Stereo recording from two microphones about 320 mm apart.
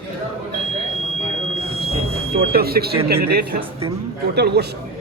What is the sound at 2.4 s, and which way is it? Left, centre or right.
A man's voice, right.